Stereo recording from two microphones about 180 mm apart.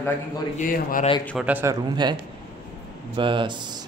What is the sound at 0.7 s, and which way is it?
Speech, 50° left (ahead or behind).